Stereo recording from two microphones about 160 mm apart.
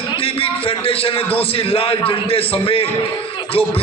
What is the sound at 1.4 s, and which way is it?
A man's voice, 35° left (ahead or behind).